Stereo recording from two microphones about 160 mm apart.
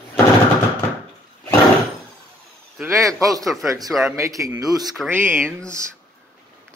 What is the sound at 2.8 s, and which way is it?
A man's voice, 20° right (ahead or behind).